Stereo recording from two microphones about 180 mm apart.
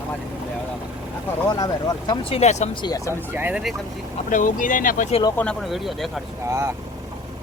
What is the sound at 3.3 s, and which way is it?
Speech, 10° right (ahead or behind).